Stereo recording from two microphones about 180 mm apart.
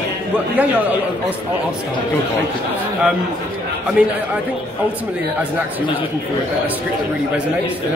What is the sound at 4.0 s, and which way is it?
Speech, 5° right (ahead or behind).